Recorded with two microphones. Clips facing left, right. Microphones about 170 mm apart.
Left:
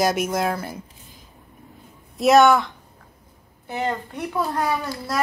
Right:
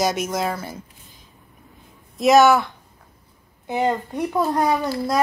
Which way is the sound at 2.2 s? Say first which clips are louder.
Right 1 dB; centre (ahead or behind).